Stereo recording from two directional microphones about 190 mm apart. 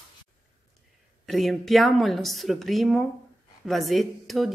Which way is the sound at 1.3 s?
Centre (ahead or behind).